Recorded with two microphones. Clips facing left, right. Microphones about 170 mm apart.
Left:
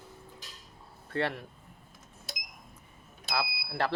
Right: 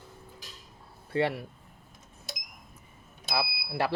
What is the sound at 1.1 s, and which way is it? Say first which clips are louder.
Speech: right 4 dB; 15° right (ahead or behind).